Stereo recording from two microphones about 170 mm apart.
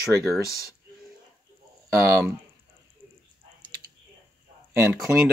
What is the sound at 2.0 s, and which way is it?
Speech, 15° right (ahead or behind).